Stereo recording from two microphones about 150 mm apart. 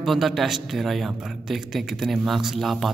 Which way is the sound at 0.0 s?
Centre (ahead or behind).